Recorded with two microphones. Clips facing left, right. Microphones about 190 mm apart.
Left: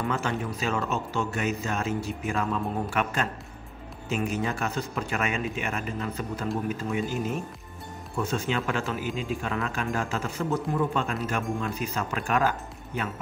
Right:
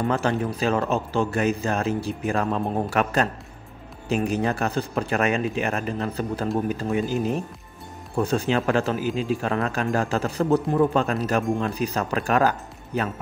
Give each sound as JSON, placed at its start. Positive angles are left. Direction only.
{"t": 0.0, "sound": "speech", "side_deg": -35}
{"t": 4.1, "sound": "speech", "side_deg": -35}